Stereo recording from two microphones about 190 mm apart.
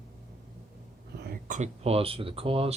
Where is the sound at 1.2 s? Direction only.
50° right (ahead or behind); by 2.7 s 30° right (ahead or behind).